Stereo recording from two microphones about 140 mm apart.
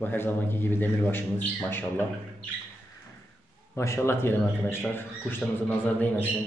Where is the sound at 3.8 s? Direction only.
20° left (ahead or behind).